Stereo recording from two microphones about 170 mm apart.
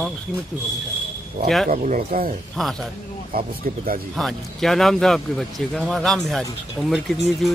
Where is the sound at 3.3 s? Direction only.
55° right (ahead or behind).